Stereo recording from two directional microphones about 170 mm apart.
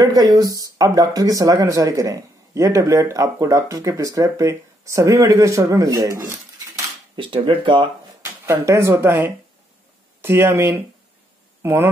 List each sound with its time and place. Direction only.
0.0 s speech: 20° right (ahead or behind)
7.2 s speech: 30° right (ahead or behind)
8.2 s speech: 15° right (ahead or behind)